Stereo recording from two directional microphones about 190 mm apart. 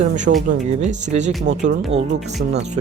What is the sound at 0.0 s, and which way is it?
Speech, 40° right (ahead or behind).